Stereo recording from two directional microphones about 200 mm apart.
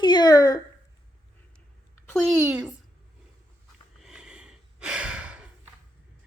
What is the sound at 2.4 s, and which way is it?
Speech, 5° right (ahead or behind).